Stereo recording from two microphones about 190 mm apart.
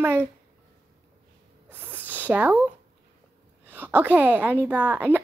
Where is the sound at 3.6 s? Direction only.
10° right (ahead or behind).